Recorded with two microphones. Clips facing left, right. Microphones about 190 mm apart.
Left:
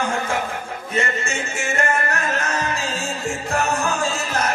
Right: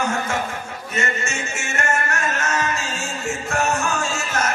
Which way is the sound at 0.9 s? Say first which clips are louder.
Left 2 dB; 35° left (ahead or behind).